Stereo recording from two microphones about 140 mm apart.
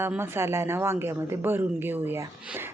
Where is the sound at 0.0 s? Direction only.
15° right (ahead or behind).